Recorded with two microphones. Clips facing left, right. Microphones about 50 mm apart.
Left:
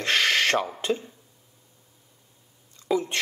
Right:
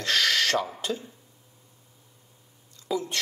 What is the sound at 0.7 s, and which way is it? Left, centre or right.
Speech, left.